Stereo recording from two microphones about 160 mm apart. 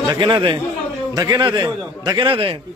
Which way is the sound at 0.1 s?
30° right (ahead or behind).